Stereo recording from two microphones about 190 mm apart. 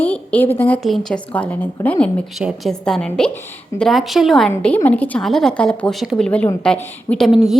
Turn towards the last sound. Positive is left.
turn(degrees=0)  # may be behind; listen again after turning